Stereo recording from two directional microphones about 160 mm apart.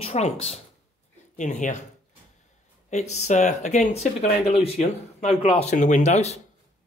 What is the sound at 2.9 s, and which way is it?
Speech, 45° left (ahead or behind).